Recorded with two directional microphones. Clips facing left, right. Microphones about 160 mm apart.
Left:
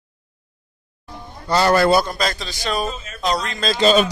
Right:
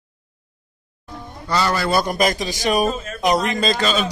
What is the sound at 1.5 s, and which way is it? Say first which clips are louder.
Speech: left 5 dB; 45° left (ahead or behind).